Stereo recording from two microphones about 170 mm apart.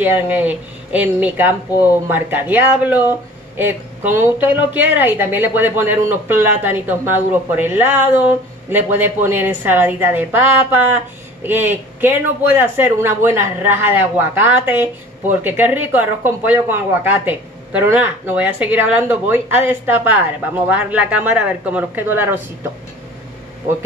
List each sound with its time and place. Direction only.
0.0 s speech: 10° right (ahead or behind)